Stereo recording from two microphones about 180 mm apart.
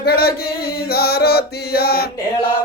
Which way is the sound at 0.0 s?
60° left (ahead or behind).